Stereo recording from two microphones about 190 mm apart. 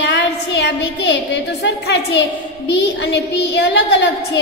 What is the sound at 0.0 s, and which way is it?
A woman's voice, 65° left (ahead or behind).